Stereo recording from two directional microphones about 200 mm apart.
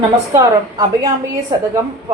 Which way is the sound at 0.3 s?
20° right (ahead or behind).